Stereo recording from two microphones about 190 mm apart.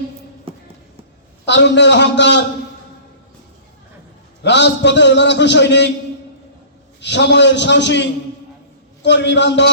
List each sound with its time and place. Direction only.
1.5 s a man's voice: 65° left (ahead or behind)
4.4 s a man's voice: 65° left (ahead or behind)
7.0 s a man's voice: 65° left (ahead or behind)